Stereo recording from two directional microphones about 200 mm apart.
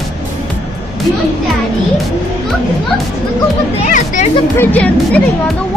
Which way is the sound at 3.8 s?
40° left (ahead or behind).